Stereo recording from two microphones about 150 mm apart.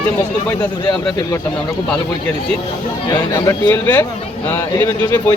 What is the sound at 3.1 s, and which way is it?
Speech, 25° left (ahead or behind).